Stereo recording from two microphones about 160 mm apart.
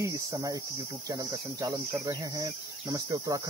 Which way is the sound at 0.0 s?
20° right (ahead or behind).